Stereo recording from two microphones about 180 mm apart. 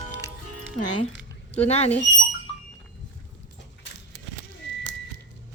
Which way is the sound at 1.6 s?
35° left (ahead or behind).